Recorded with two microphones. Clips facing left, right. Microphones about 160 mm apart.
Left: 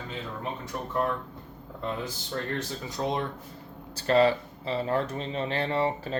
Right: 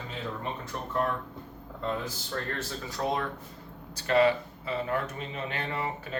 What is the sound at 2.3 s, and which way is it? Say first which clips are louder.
Speech: left 3 dB; 20° left (ahead or behind).